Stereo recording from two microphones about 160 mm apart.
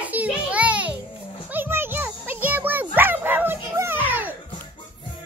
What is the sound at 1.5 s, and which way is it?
Music, 15° right (ahead or behind).